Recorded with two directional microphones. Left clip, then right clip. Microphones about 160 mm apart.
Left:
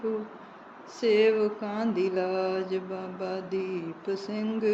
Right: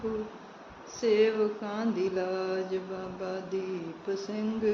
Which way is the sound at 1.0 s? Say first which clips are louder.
Left 2 dB; 55° left (ahead or behind).